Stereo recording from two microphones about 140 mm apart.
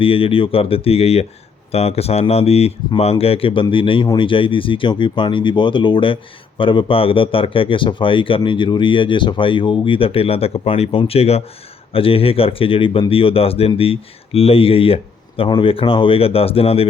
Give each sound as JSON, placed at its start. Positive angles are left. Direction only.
{"t": 0.0, "sound": "a man's voice", "side_deg": 40}